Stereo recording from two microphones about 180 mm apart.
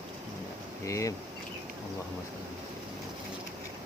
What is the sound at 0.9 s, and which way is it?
Speech, 15° left (ahead or behind).